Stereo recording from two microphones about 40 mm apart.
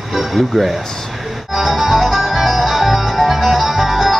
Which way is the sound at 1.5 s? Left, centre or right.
Centre.